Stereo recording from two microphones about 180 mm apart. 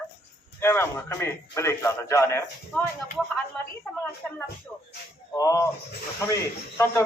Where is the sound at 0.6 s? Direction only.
15° left (ahead or behind).